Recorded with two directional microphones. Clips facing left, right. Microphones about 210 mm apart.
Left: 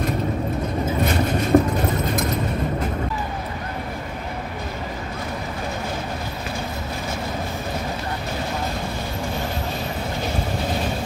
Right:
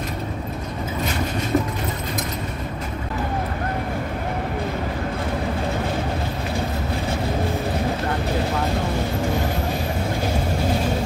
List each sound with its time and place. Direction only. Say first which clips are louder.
1.5 s vehicle: left 6 dB; 50° left (ahead or behind)